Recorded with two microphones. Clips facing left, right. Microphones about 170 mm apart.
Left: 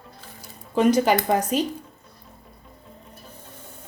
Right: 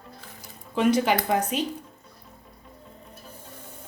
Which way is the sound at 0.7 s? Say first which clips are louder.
Left 3 dB; 40° left (ahead or behind).